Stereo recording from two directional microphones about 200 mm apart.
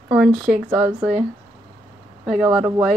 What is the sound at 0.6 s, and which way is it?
Speech, 5° right (ahead or behind).